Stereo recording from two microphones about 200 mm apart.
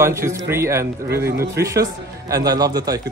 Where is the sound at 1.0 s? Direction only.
50° right (ahead or behind).